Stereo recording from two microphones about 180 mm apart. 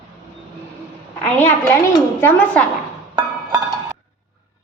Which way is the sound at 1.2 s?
10° left (ahead or behind).